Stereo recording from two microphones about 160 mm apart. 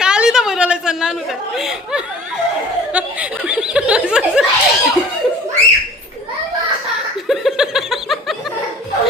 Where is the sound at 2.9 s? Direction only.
10° right (ahead or behind).